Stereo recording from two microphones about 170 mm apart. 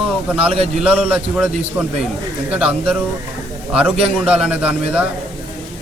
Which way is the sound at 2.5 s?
5° right (ahead or behind).